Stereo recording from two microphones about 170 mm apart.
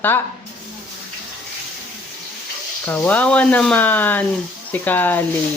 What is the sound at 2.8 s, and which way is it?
Speech, 10° left (ahead or behind).